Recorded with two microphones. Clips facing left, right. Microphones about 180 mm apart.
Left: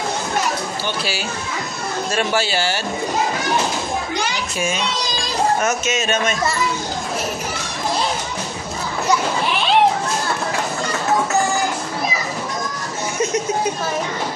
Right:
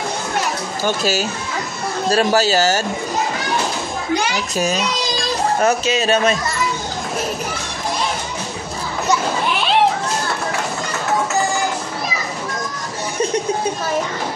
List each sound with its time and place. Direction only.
0.8 s a man's voice: 40° right (ahead or behind)
4.6 s a man's voice: 40° right (ahead or behind)